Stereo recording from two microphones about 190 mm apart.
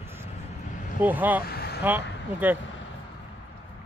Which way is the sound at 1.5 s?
55° left (ahead or behind).